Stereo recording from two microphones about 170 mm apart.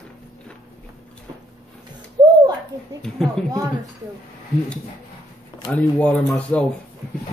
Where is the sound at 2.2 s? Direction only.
20° right (ahead or behind).